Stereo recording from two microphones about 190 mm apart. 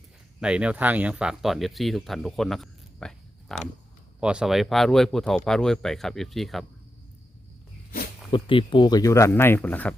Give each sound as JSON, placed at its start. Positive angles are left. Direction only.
{"t": 0.3, "sound": "speech", "side_deg": -5}
{"t": 8.3, "sound": "speech", "side_deg": 25}